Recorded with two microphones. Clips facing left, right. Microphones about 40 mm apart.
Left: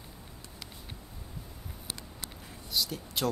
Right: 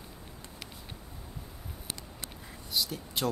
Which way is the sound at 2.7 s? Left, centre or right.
Centre.